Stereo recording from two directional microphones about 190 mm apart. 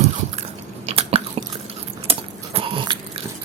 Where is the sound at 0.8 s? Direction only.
30° right (ahead or behind).